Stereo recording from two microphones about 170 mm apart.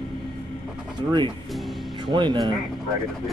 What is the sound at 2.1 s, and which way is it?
Speech, 25° right (ahead or behind).